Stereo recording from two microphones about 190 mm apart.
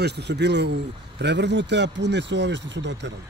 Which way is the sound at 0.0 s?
60° right (ahead or behind).